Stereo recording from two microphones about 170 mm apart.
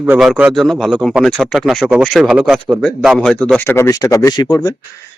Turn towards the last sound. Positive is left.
turn(degrees=25)  # may be behind; listen again after turning